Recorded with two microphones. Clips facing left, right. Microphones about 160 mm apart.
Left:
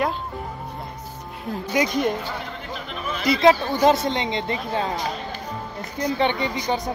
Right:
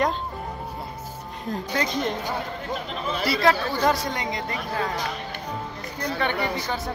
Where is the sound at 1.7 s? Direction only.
10° left (ahead or behind).